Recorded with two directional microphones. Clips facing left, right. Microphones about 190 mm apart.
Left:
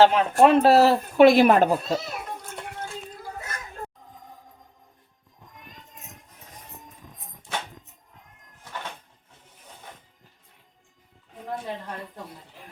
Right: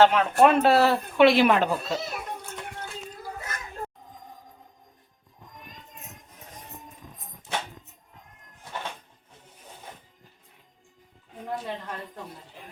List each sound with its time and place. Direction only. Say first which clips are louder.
0.0 s speech: left 1 dB; 30° left (ahead or behind)